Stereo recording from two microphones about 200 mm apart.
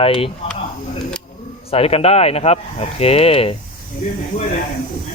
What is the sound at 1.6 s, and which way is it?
Speech, 30° left (ahead or behind).